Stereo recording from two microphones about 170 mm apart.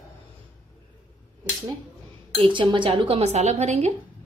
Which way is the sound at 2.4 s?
30° right (ahead or behind).